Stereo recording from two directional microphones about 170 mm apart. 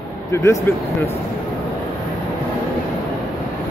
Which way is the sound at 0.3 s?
15° left (ahead or behind).